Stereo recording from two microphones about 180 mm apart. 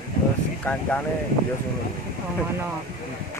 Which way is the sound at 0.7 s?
10° left (ahead or behind).